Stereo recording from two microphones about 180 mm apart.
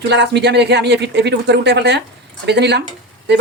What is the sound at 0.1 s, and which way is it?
Speech, 70° right (ahead or behind).